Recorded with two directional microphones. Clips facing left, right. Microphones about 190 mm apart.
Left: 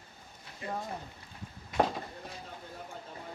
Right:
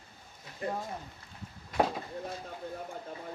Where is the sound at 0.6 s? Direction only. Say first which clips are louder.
Right 4 dB; 50° right (ahead or behind).